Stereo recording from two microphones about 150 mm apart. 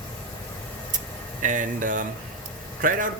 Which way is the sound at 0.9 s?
60° right (ahead or behind).